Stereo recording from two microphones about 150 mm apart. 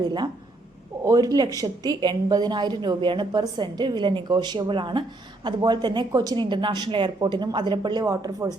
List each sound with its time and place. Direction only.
0.0 s a woman's voice: 30° right (ahead or behind)